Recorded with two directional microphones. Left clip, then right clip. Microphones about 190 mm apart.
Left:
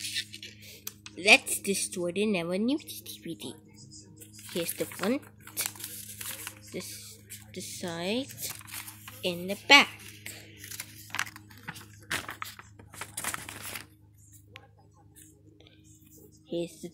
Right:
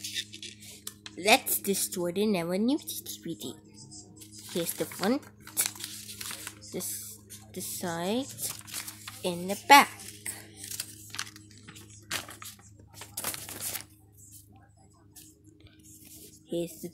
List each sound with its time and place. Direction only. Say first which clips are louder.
0.0 s a sound: left 2 dB; 5° right (ahead or behind)
1.0 s speech: left 3 dB; 5° right (ahead or behind)
4.5 s crumpling: even; 10° right (ahead or behind)
11.1 s music: left 9 dB; 10° right (ahead or behind)
13.2 s crumpling: left 1 dB; 20° right (ahead or behind)
16.4 s speech: right 1 dB; centre (ahead or behind)